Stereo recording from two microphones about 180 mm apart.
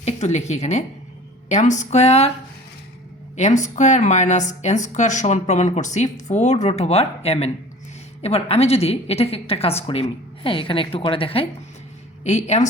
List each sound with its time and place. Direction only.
0.0 s a woman's voice: 40° left (ahead or behind)
3.3 s a woman's voice: 40° left (ahead or behind)